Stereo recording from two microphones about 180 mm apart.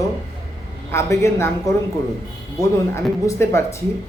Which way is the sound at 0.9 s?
15° left (ahead or behind).